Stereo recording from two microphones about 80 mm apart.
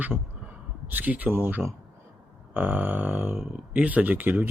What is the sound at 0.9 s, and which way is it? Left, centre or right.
Speech, right.